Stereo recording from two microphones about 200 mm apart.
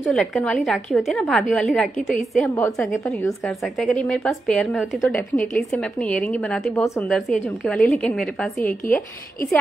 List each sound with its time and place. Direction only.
0.0 s a woman's voice: centre (ahead or behind)